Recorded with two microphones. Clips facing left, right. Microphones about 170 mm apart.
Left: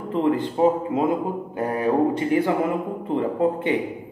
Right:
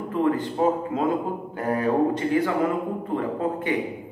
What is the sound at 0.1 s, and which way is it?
Speech, 20° left (ahead or behind).